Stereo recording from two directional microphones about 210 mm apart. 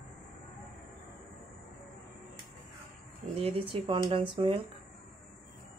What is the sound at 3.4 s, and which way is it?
Speech, 25° right (ahead or behind).